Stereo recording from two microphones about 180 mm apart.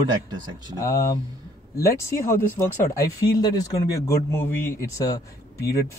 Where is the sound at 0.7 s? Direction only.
15° left (ahead or behind).